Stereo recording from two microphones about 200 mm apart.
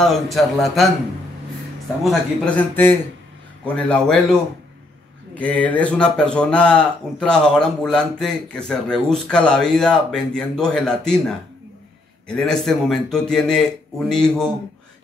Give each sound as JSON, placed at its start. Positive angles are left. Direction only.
{"t": 0.0, "sound": "speech", "side_deg": 0}
{"t": 2.0, "sound": "a man's voice", "side_deg": 5}